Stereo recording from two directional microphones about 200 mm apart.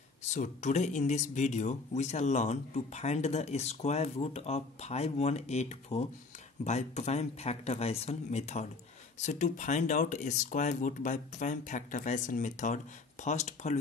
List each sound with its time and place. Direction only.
0.3 s speech: 35° left (ahead or behind)